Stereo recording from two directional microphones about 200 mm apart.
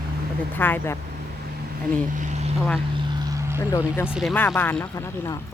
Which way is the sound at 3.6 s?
15° left (ahead or behind).